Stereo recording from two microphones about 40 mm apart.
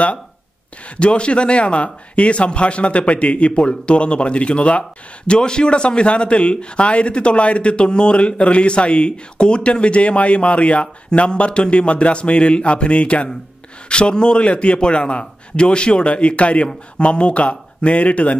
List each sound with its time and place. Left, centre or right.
0.9 s speech: left